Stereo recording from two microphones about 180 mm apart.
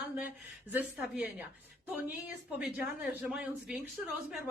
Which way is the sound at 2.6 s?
5° right (ahead or behind).